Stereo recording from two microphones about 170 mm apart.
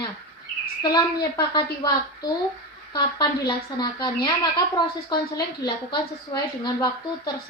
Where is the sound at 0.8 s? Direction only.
25° left (ahead or behind).